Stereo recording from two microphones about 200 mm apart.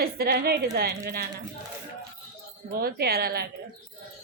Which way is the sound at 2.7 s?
50° right (ahead or behind).